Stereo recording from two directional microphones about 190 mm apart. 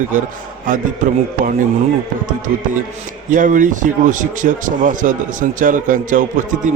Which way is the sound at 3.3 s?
45° right (ahead or behind).